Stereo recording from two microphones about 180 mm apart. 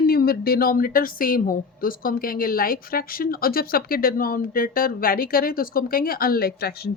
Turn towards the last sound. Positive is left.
turn(degrees=60)  # may be behind; listen again after turning